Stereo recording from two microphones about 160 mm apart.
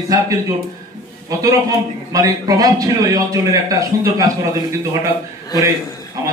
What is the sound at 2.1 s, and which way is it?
A man's voice, 20° right (ahead or behind).